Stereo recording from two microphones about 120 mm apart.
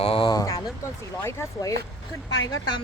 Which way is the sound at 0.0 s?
50° left (ahead or behind).